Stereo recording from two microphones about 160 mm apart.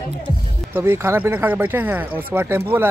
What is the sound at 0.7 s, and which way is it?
Speech, 15° right (ahead or behind).